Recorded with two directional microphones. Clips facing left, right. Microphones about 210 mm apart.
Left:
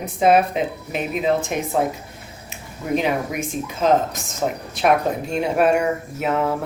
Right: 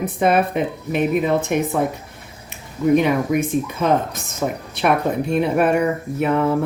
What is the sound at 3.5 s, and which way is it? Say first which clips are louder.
Speech: right 1 dB; 60° right (ahead or behind).